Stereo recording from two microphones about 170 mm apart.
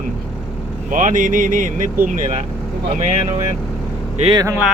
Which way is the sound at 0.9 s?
50° right (ahead or behind).